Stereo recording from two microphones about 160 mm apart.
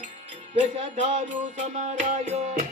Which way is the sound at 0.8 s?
45° right (ahead or behind).